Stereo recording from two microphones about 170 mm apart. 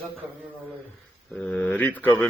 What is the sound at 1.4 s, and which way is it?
Speech, 5° left (ahead or behind).